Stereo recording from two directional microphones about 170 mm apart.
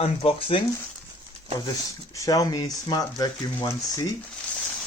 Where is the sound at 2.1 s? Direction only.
20° left (ahead or behind).